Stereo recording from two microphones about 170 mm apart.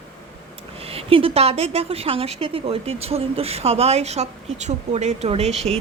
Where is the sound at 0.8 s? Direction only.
35° right (ahead or behind).